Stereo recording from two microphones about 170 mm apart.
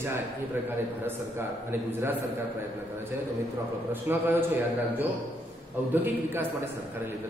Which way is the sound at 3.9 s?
10° right (ahead or behind).